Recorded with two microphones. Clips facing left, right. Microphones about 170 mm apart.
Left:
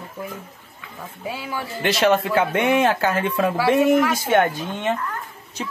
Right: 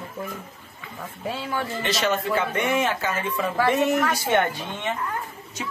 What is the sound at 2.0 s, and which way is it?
Speech, 60° left (ahead or behind).